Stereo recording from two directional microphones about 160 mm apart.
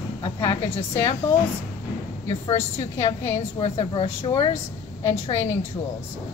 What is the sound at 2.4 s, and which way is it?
A woman's voice, 40° left (ahead or behind).